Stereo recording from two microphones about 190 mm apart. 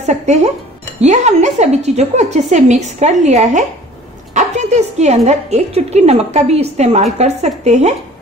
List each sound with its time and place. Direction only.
0.0 s a woman's voice: 35° right (ahead or behind)